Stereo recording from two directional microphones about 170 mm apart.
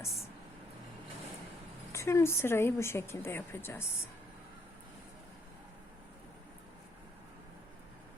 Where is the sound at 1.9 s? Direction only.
15° left (ahead or behind).